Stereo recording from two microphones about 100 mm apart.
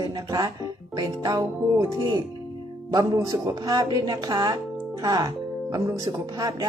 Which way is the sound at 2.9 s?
35° right (ahead or behind).